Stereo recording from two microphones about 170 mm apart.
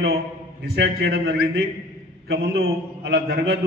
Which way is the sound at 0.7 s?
75° right (ahead or behind).